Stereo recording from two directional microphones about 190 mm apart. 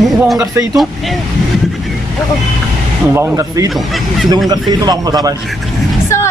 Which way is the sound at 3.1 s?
15° right (ahead or behind).